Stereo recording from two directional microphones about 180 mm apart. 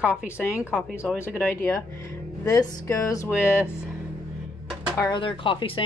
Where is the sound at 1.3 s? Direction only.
10° left (ahead or behind).